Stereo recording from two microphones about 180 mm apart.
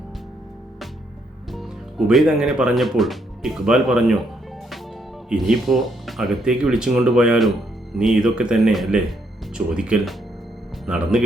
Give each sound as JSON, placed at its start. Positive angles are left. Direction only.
{"t": 1.5, "sound": "speech", "side_deg": 0}
{"t": 5.3, "sound": "speech", "side_deg": 0}